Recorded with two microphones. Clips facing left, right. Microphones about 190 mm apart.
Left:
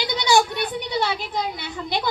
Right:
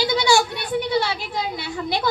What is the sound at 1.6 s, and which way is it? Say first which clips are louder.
Speech: right 3 dB; 20° left (ahead or behind).